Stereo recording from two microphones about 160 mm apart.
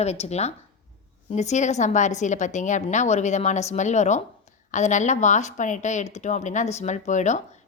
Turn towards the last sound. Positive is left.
turn(degrees=50)  # may be behind; listen again after turning